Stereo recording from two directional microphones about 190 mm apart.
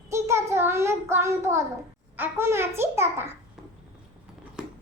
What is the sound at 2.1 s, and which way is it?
A child's voice, 10° right (ahead or behind).